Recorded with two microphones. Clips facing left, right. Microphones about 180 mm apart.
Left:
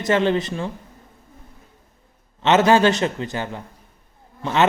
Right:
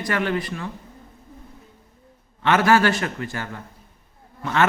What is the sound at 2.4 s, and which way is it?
Speech, 20° left (ahead or behind).